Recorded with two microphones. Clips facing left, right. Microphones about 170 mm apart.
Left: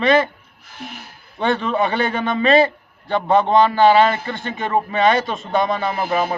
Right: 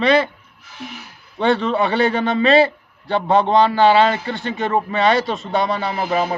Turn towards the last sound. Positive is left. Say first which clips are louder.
# even
turn(degrees=50)  # may be behind; listen again after turning